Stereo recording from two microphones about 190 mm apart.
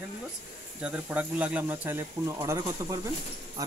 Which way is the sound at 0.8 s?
5° right (ahead or behind).